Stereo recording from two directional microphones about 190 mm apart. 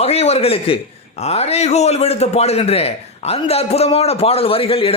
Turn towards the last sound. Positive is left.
turn(degrees=30)  # may be behind; listen again after turning